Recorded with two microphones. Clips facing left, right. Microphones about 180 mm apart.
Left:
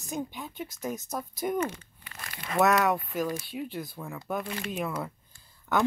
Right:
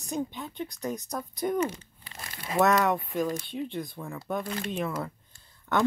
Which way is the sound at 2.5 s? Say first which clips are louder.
Even; centre (ahead or behind).